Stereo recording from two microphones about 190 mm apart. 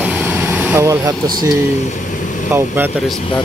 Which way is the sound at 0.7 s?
15° right (ahead or behind).